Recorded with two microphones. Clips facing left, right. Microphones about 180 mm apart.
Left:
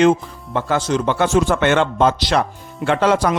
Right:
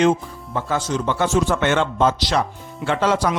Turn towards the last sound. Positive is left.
turn(degrees=55)  # may be behind; listen again after turning